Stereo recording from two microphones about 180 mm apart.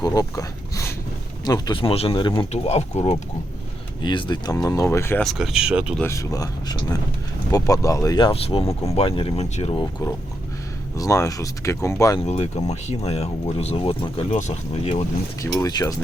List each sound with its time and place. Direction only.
0.0 s a sound: 20° left (ahead or behind)
1.5 s speech: 20° left (ahead or behind)
5.2 s speech: centre (ahead or behind)
6.0 s speech: 15° left (ahead or behind); by 9.8 s 35° left (ahead or behind)
10.9 s speech: 20° left (ahead or behind)
12.2 s speech: 35° left (ahead or behind)
14.3 s speech: 40° left (ahead or behind)
15.6 s speech: 20° left (ahead or behind)